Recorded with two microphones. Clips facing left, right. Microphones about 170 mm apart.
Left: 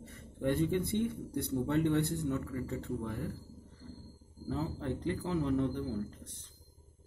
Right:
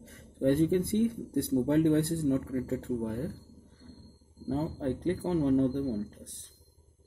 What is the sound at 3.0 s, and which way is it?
Speech, 45° right (ahead or behind).